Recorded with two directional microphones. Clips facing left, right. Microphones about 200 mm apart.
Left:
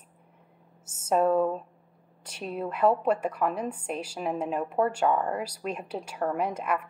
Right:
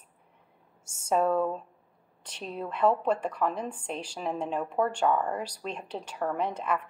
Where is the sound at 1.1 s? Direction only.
5° left (ahead or behind).